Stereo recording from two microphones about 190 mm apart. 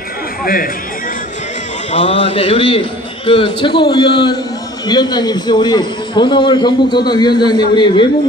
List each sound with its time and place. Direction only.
0.4 s speech: 50° left (ahead or behind)
1.9 s a man's voice: 30° left (ahead or behind)